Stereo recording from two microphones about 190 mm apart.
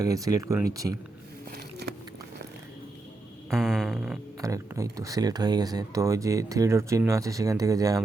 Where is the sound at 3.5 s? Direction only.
Centre (ahead or behind).